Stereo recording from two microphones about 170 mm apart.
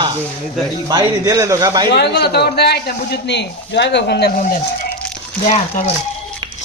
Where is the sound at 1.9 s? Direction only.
75° left (ahead or behind).